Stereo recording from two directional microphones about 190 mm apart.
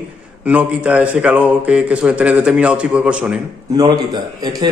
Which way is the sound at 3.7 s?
20° right (ahead or behind).